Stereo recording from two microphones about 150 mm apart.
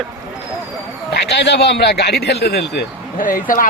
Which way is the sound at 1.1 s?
90° left.